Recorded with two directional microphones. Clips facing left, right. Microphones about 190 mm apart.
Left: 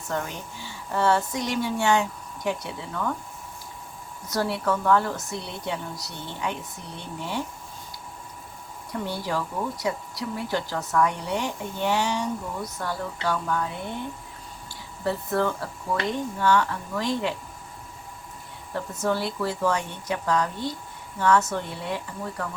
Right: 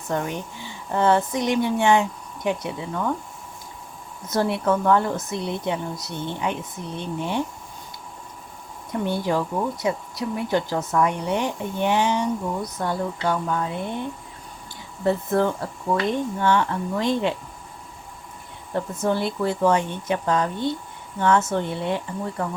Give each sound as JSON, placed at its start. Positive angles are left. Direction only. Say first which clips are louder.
{"t": 0.1, "sound": "speech", "louder": "right 4 dB", "side_deg": -20}
{"t": 4.3, "sound": "speech", "louder": "right 4 dB", "side_deg": -20}
{"t": 8.9, "sound": "speech", "louder": "right 6 dB", "side_deg": -20}
{"t": 15.0, "sound": "speech", "louder": "right 4 dB", "side_deg": -20}
{"t": 18.7, "sound": "speech", "louder": "right 3 dB", "side_deg": -20}